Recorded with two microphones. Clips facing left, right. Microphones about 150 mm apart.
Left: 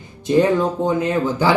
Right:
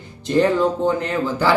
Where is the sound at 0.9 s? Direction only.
15° left (ahead or behind).